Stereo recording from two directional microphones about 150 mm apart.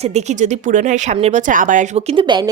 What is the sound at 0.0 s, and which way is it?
Speech, 50° right (ahead or behind).